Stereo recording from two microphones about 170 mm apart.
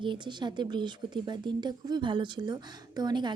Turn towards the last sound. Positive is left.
turn(degrees=-25)  # may be behind; listen again after turning